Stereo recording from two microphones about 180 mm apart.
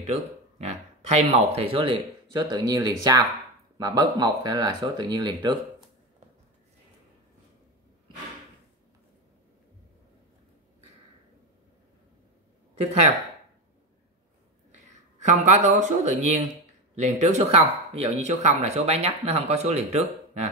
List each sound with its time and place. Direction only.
0.0 s speech: 35° right (ahead or behind)
15.1 s speech: 40° right (ahead or behind)